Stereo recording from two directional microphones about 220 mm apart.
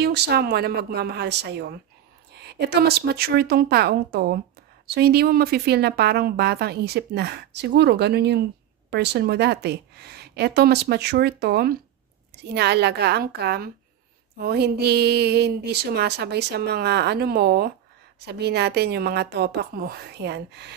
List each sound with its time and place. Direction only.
0.0 s speech: 45° right (ahead or behind)